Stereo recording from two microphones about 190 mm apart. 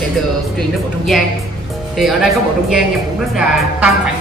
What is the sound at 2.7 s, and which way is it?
A woman's voice, centre (ahead or behind).